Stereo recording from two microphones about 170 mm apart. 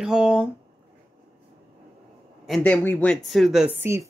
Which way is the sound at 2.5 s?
10° left (ahead or behind).